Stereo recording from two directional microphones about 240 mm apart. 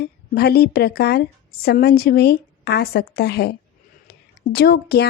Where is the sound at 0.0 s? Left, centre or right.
Left.